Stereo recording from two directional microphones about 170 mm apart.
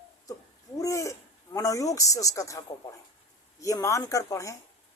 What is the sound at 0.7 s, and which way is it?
Speech, 20° left (ahead or behind).